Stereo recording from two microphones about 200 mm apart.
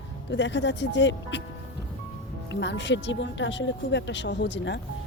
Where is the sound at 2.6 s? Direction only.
65° left (ahead or behind).